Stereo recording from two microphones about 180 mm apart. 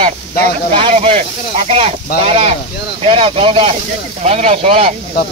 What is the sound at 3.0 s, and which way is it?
Speech, 30° right (ahead or behind).